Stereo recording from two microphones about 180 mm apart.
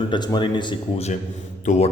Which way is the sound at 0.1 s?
25° left (ahead or behind).